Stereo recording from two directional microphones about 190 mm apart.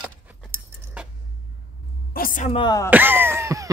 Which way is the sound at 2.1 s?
50° left (ahead or behind).